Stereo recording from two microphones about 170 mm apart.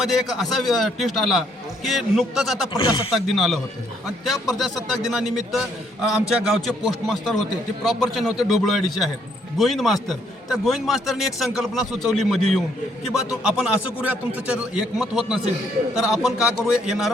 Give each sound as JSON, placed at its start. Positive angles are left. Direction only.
{"t": 0.0, "sound": "a man's voice", "side_deg": 0}
{"t": 2.7, "sound": "speech", "side_deg": 30}
{"t": 3.2, "sound": "a man's voice", "side_deg": 0}